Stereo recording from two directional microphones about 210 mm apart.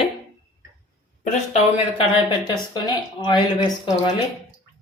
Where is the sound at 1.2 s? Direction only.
35° left (ahead or behind).